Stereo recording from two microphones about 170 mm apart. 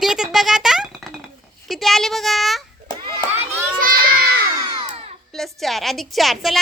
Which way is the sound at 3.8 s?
60° right (ahead or behind).